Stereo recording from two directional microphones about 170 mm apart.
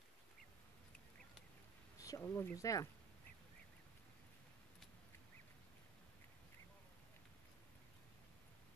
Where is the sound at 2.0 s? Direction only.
20° left (ahead or behind).